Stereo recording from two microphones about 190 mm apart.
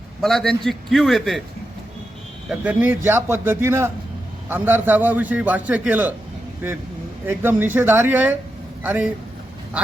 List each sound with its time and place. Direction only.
0.2 s a man's voice: centre (ahead or behind)
2.5 s a man's voice: 5° right (ahead or behind)
7.3 s a man's voice: 10° right (ahead or behind)